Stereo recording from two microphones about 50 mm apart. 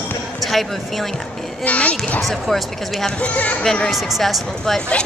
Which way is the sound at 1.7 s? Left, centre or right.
Left.